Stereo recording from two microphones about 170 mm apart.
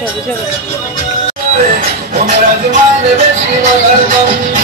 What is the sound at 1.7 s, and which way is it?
Speech, 55° right (ahead or behind).